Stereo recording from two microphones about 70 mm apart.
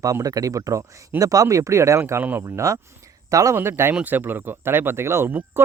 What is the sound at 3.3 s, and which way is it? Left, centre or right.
Speech, right.